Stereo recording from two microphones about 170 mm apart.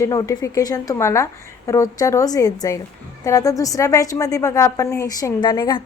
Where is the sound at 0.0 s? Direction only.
20° left (ahead or behind).